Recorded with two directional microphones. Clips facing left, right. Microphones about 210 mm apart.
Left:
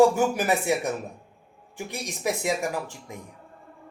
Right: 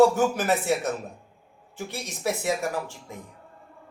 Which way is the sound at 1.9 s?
15° left (ahead or behind).